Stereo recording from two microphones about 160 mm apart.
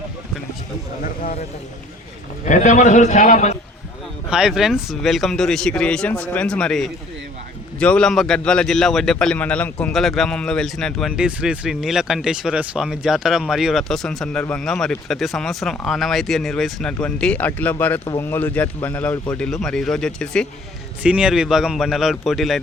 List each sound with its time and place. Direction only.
2.4 s a man's voice: 50° left (ahead or behind)
4.3 s a man's voice: 5° right (ahead or behind)
21.0 s a man's voice: 5° right (ahead or behind)